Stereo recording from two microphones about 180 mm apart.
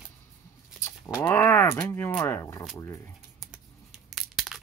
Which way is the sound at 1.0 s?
15° left (ahead or behind).